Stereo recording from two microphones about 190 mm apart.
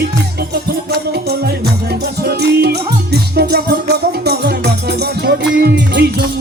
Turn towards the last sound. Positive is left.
turn(degrees=-60)  # may be behind; listen again after turning